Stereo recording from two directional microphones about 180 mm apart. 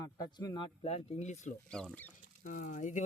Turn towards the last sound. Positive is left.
turn(degrees=45)  # may be behind; listen again after turning